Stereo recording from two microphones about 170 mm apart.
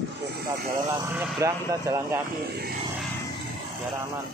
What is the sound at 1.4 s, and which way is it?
Speech, 20° right (ahead or behind).